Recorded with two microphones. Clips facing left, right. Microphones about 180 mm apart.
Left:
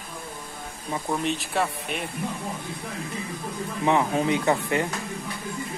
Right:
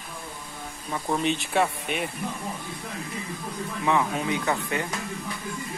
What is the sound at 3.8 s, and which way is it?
Speech, 30° left (ahead or behind).